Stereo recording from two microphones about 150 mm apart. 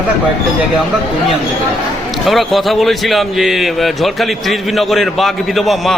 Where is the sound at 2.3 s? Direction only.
Centre (ahead or behind).